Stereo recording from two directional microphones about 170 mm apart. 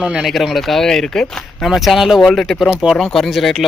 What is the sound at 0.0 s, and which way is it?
Speech, 5° right (ahead or behind).